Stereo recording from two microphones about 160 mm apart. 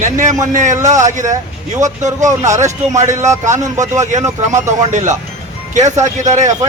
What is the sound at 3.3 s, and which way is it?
Speech, 20° right (ahead or behind).